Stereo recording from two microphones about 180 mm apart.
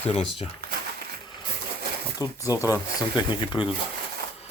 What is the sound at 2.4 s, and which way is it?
Speech, 20° left (ahead or behind).